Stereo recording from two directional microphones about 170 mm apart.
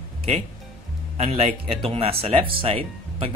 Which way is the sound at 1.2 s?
40° right (ahead or behind).